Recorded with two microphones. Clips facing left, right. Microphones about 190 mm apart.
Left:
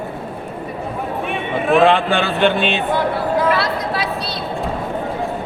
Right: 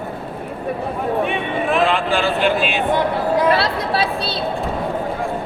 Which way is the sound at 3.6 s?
30° right (ahead or behind).